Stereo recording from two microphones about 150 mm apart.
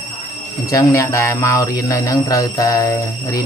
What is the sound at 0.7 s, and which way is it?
Speech, 20° left (ahead or behind).